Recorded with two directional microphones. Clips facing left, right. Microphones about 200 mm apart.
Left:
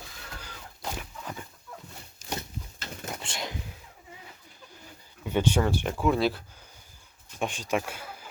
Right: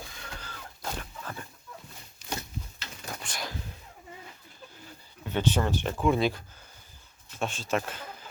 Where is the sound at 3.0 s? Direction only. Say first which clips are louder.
Left 2 dB; 25° left (ahead or behind).